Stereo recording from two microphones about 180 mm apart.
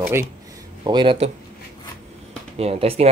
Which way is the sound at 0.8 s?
25° right (ahead or behind).